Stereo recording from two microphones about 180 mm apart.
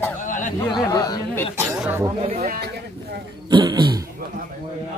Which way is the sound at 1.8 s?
10° right (ahead or behind).